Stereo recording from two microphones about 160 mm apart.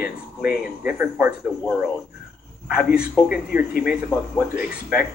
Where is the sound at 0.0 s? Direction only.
10° right (ahead or behind).